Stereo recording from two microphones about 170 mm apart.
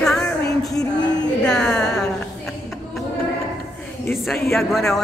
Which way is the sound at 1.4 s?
5° left (ahead or behind).